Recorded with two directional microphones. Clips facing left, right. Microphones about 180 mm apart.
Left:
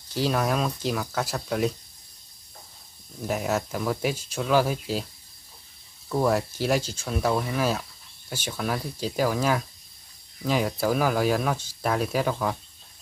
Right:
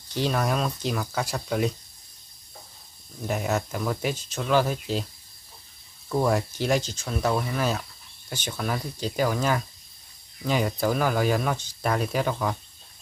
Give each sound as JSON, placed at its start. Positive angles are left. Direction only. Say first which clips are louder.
{"t": 0.1, "sound": "speech", "louder": "left 1 dB", "side_deg": 0}
{"t": 3.3, "sound": "speech", "louder": "even", "side_deg": 5}
{"t": 6.0, "sound": "speech", "louder": "even", "side_deg": 0}